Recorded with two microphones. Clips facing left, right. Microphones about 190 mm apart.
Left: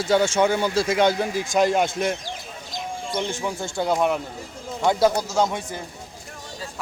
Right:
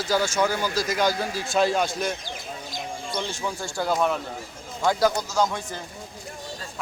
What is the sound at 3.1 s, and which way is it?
Speech, 15° left (ahead or behind).